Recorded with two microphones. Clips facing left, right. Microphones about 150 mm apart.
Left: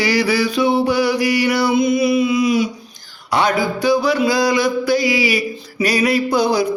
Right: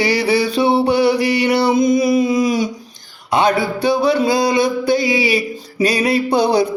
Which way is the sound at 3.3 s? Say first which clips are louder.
Right 2 dB; 25° right (ahead or behind).